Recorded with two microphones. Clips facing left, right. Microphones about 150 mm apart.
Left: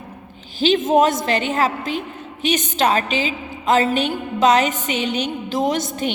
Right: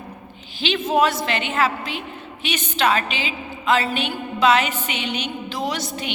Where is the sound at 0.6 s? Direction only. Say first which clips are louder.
Left 4 dB; 40° left (ahead or behind).